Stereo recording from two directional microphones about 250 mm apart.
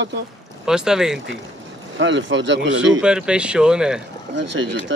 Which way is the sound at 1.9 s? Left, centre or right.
Right.